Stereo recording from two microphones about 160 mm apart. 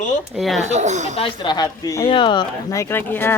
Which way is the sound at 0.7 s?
45° right (ahead or behind).